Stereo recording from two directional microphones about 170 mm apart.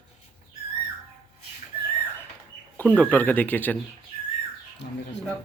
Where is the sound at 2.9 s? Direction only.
10° left (ahead or behind).